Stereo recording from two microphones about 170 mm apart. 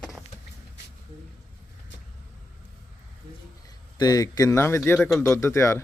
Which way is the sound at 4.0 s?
20° left (ahead or behind).